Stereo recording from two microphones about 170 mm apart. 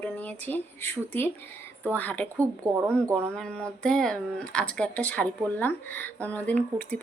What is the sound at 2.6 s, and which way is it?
Speech, 20° right (ahead or behind).